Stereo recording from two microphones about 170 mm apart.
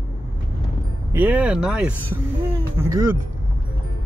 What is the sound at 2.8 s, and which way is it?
Speech, 15° right (ahead or behind).